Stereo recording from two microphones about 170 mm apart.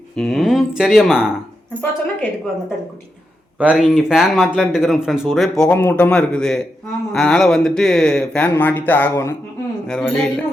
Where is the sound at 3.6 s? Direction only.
5° right (ahead or behind).